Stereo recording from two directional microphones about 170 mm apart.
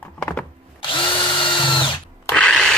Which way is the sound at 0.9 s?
30° left (ahead or behind).